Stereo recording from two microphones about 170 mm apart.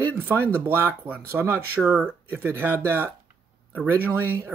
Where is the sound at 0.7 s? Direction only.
10° right (ahead or behind).